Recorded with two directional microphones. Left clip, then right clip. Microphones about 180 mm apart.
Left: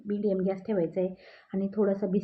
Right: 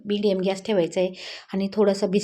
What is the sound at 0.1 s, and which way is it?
A woman's voice, 20° right (ahead or behind).